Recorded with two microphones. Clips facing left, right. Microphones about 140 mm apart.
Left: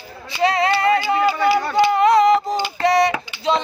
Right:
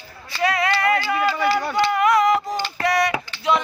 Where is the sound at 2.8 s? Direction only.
25° left (ahead or behind).